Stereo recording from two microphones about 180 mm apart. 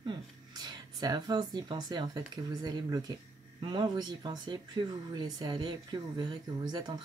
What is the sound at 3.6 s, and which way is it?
Speech, 25° right (ahead or behind).